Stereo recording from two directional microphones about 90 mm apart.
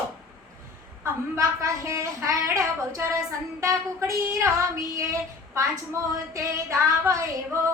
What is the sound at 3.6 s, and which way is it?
Female singing, 35° right (ahead or behind).